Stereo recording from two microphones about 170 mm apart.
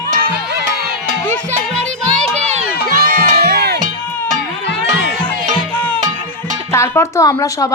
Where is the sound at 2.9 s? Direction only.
55° right (ahead or behind).